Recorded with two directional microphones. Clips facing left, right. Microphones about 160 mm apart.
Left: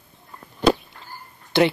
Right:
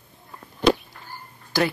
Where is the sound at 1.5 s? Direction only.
25° left (ahead or behind).